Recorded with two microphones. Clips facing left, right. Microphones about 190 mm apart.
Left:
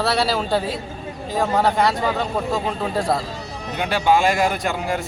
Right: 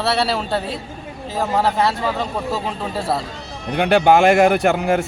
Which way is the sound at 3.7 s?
60° right (ahead or behind).